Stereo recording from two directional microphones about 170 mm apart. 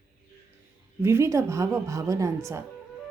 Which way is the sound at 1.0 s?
15° right (ahead or behind).